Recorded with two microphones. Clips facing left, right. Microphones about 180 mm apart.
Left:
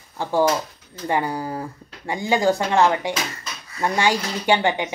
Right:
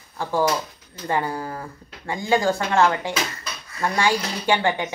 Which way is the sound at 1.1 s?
15° left (ahead or behind).